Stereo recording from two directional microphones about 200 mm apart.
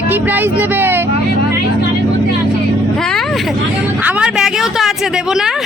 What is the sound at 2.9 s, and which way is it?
Vehicle, centre (ahead or behind).